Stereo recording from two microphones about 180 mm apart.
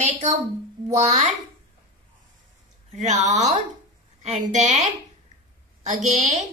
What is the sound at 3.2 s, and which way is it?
A woman's voice, 40° right (ahead or behind).